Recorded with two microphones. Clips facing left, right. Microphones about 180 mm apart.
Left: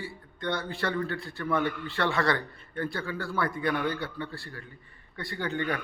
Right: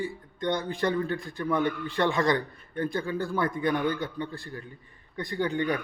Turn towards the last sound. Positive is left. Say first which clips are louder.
# right 4 dB
turn(degrees=-15)  # may be behind; listen again after turning